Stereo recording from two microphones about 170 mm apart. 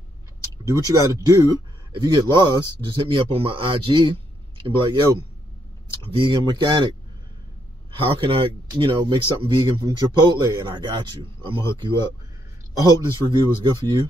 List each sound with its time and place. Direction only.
0.7 s speech: 20° right (ahead or behind)
6.1 s speech: 30° right (ahead or behind)
8.1 s speech: 30° right (ahead or behind)